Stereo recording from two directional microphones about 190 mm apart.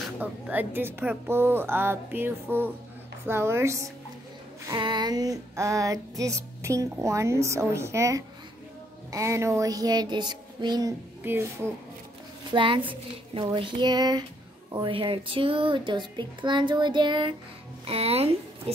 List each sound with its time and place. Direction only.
0.2 s music: 10° right (ahead or behind)
12.5 s a child's voice: 25° right (ahead or behind)